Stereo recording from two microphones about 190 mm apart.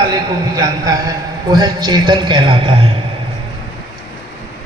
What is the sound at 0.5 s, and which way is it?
A man's voice, 20° right (ahead or behind).